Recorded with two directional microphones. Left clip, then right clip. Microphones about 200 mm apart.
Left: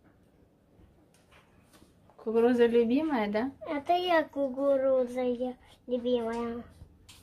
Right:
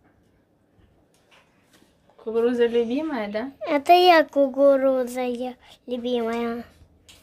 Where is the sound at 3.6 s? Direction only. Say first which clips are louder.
Right 15 dB; 55° right (ahead or behind).